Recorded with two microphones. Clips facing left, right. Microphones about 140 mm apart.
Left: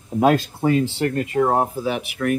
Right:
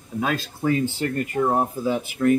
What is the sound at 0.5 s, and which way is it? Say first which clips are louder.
Speech: left 3 dB; 85° left.